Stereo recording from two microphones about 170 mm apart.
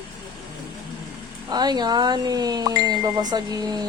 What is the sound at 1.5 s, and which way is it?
Speech, 25° right (ahead or behind).